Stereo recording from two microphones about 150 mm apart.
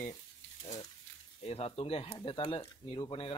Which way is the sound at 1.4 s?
40° left (ahead or behind).